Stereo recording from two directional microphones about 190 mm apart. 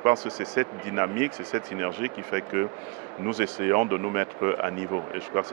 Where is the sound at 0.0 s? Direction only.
15° right (ahead or behind).